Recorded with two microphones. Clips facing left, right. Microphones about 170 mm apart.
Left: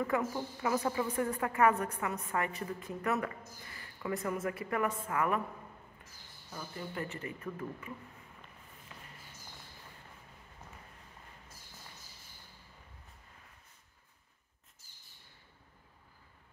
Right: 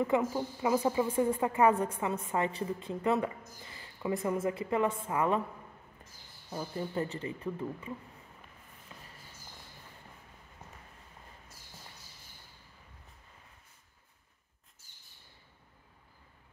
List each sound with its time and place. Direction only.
0.0 s a woman's voice: 20° right (ahead or behind)
6.5 s a woman's voice: 30° right (ahead or behind)